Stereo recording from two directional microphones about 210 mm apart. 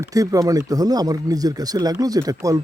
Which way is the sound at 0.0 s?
15° right (ahead or behind).